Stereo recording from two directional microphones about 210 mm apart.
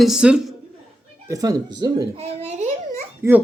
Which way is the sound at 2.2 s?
30° right (ahead or behind).